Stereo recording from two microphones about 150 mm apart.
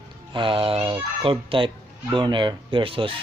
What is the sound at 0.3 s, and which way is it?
Speech, 35° right (ahead or behind).